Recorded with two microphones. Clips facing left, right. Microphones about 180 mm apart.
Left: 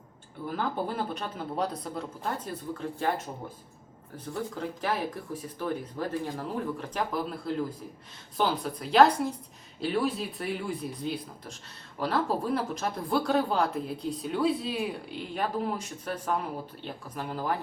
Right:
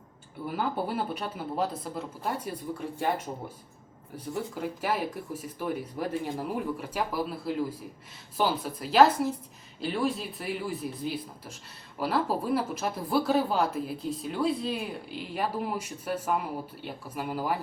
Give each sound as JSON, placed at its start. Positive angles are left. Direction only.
{"t": 0.4, "sound": "speech", "side_deg": -10}
{"t": 4.5, "sound": "speech", "side_deg": -10}